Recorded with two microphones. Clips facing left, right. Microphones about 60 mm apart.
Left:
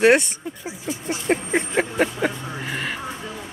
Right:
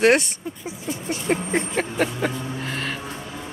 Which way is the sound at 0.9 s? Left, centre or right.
Centre.